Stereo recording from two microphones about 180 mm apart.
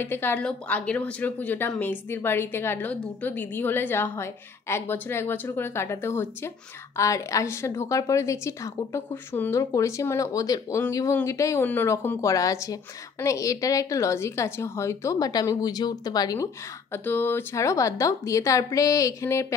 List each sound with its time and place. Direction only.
0.0 s a woman's voice: 10° left (ahead or behind)